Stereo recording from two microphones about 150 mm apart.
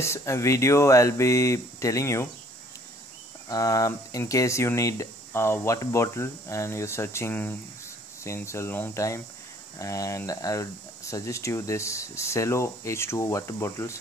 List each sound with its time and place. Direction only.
0.0 s speech: 20° left (ahead or behind)
3.4 s speech: 25° left (ahead or behind)